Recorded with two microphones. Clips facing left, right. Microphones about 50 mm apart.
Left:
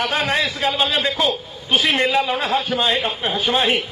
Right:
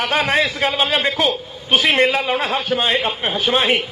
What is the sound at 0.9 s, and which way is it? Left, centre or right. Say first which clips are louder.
A man's voice: right 2 dB; right.